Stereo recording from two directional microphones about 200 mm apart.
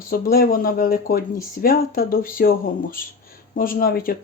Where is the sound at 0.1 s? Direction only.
45° left (ahead or behind).